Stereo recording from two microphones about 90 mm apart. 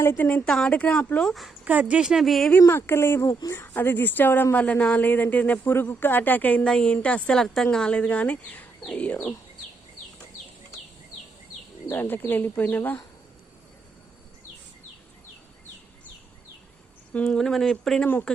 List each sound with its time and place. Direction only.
0.0 s a woman's voice: 30° left (ahead or behind)
0.4 s speech: 10° left (ahead or behind)
1.2 s speech: centre (ahead or behind)
1.6 s speech: 15° right (ahead or behind); by 2.5 s centre (ahead or behind)
2.6 s speech: 25° left (ahead or behind)
11.9 s speech: 25° left (ahead or behind)
17.1 s speech: 15° left (ahead or behind)
17.3 s speech: 5° left (ahead or behind)
18.0 s speech: 20° left (ahead or behind)